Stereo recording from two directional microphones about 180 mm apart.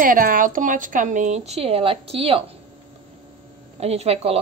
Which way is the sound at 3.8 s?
35° right (ahead or behind).